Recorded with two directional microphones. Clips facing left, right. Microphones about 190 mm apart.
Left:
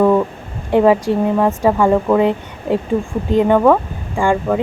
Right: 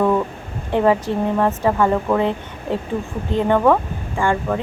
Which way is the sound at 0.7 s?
10° left (ahead or behind).